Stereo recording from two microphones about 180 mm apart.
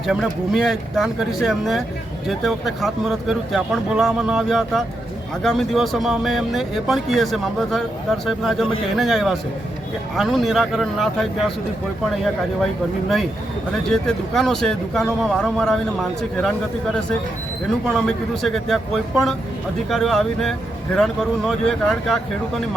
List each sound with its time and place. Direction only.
0.0 s speech: centre (ahead or behind)
13.9 s speech: centre (ahead or behind)